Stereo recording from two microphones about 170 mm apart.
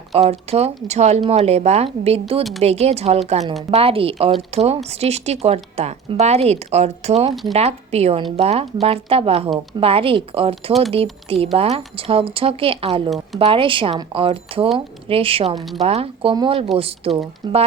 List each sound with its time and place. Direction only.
0.1 s speech: 40° right (ahead or behind)
13.1 s speech: centre (ahead or behind)
13.4 s speech: 30° right (ahead or behind)